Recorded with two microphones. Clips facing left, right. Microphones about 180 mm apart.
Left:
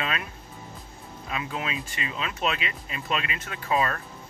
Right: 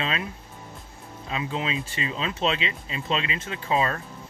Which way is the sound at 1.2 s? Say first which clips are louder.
Right 3 dB; 25° right (ahead or behind).